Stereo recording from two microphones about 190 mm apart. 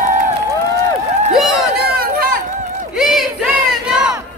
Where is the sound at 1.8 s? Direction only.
50° right (ahead or behind).